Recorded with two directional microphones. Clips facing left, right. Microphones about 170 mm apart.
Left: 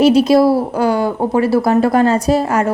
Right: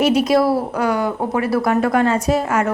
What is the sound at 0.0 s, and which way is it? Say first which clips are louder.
A woman's voice: left 5 dB; 30° left (ahead or behind).